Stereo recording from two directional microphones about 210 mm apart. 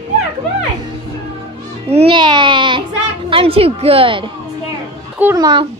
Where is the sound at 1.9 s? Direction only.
25° right (ahead or behind).